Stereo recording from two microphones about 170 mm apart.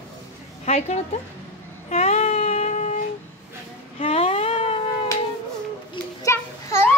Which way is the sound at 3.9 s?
35° left (ahead or behind).